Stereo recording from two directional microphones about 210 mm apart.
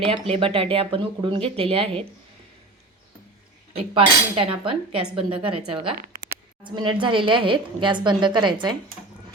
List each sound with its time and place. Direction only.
0.0 s a woman's voice: 25° right (ahead or behind)
3.9 s a woman's voice: 25° right (ahead or behind)